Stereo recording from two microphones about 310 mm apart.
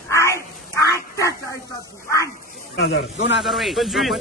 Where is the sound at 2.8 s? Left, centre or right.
Left.